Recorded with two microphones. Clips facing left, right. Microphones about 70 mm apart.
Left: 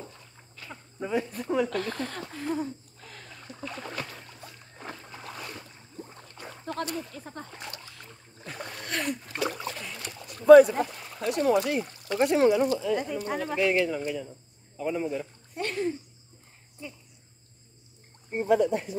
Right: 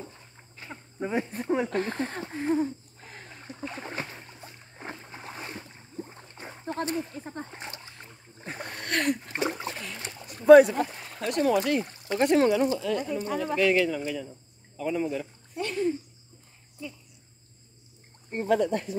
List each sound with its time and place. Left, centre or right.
0.0 s insect: right
1.0 s speech: right
3.6 s boat: right
8.6 s speech: centre
9.3 s boat: right
9.9 s rowboat: right
10.5 s speech: centre
11.9 s a sound: right
12.2 s speech: centre
15.5 s a sound: left
18.3 s speech: centre